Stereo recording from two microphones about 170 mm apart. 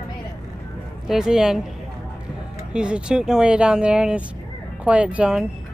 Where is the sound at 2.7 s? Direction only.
5° right (ahead or behind).